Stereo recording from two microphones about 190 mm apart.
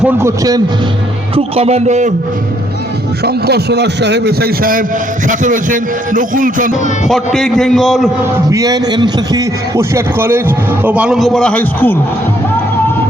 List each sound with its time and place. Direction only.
0.0 s a man's voice: 15° right (ahead or behind)
1.4 s a man's voice: 35° right (ahead or behind)
3.2 s a man's voice: 60° right (ahead or behind)
7.1 s a man's voice: centre (ahead or behind)
8.4 s a man's voice: 20° right (ahead or behind); by 11.9 s 10° left (ahead or behind)